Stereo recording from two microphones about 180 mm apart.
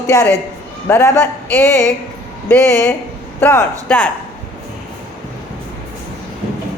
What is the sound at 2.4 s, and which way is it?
A woman's voice, 15° left (ahead or behind).